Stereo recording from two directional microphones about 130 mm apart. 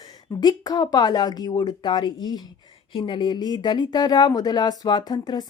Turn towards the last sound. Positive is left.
turn(degrees=35)  # may be behind; listen again after turning